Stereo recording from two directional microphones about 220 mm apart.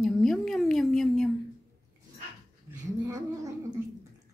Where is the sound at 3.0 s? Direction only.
15° right (ahead or behind).